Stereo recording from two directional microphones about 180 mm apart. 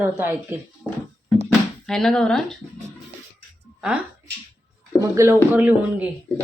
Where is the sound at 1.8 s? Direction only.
5° left (ahead or behind).